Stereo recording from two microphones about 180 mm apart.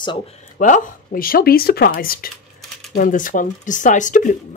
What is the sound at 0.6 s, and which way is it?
Speech, 45° left (ahead or behind).